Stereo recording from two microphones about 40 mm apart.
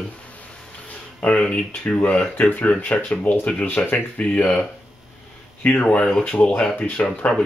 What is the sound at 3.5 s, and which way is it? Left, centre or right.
Speech, left.